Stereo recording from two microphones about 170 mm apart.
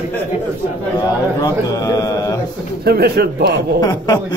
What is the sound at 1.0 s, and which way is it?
Speech, 20° left (ahead or behind).